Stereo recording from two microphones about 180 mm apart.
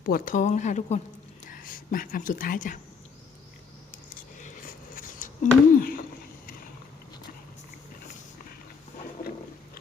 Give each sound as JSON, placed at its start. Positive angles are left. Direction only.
{"t": 0.0, "sound": "a woman's voice", "side_deg": 55}
{"t": 1.5, "sound": "speech", "side_deg": 50}
{"t": 3.9, "sound": "a sound", "side_deg": 45}